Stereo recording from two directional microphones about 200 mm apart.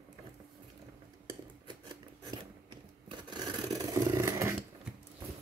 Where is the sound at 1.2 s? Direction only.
20° right (ahead or behind).